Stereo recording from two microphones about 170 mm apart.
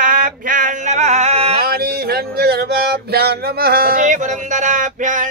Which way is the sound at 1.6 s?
65° right (ahead or behind).